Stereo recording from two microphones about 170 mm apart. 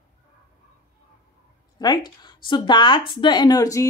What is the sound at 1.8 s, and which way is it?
Speech, 25° left (ahead or behind).